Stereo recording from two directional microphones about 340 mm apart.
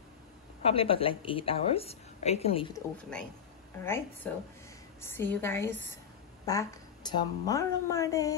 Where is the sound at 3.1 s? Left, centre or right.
Centre.